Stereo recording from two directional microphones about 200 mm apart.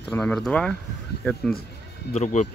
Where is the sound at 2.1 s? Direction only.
35° left (ahead or behind).